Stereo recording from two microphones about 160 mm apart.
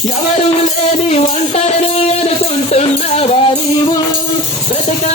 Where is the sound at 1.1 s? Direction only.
40° left (ahead or behind).